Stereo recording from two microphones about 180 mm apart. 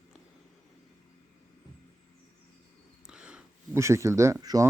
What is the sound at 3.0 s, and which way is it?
Speech, 5° right (ahead or behind).